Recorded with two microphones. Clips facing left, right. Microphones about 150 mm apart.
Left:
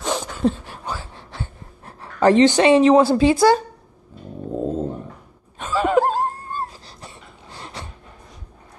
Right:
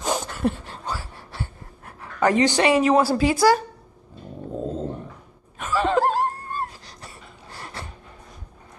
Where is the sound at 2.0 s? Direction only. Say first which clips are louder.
Left 5 dB; 30° left (ahead or behind).